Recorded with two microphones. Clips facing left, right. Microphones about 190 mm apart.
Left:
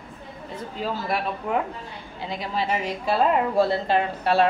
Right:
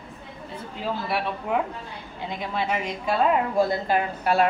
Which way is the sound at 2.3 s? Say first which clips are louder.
Left 1 dB; 35° left (ahead or behind).